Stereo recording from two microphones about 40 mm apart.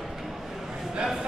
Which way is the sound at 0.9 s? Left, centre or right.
Centre.